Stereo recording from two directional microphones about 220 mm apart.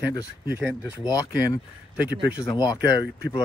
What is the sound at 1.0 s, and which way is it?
Speech, 15° left (ahead or behind).